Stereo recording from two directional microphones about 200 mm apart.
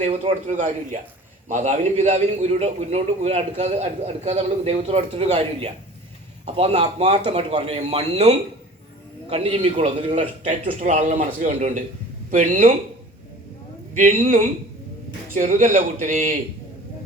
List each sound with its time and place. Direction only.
0.0 s a man's voice: 40° right (ahead or behind)
13.9 s a man's voice: 40° right (ahead or behind)
15.4 s a man's voice: 40° right (ahead or behind)